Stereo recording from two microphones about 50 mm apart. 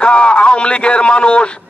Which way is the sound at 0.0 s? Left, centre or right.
Left.